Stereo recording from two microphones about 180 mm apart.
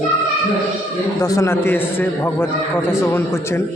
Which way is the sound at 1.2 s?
15° left (ahead or behind).